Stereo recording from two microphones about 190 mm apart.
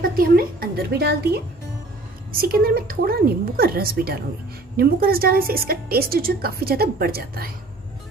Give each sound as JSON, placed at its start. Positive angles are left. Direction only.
{"t": 0.0, "sound": "a woman's voice", "side_deg": -50}